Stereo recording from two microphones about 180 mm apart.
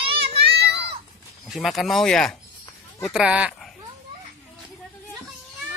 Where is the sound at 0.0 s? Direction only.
30° right (ahead or behind).